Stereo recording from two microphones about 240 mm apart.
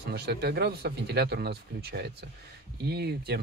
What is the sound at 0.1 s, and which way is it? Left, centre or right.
Speech, right.